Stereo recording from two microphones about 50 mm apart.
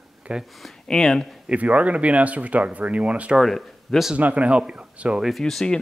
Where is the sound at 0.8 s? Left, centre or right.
Centre.